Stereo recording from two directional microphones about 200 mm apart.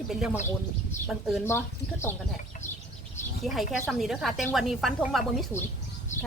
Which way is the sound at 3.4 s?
Centre (ahead or behind).